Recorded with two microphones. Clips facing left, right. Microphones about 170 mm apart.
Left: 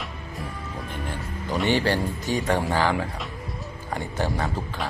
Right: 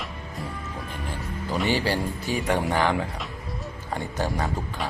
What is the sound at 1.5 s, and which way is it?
Speech, 5° right (ahead or behind).